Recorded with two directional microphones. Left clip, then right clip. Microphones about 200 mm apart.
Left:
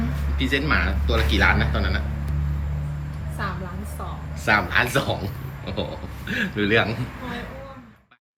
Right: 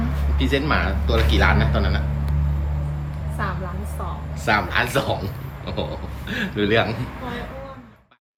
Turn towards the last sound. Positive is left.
turn(degrees=-10)  # may be behind; listen again after turning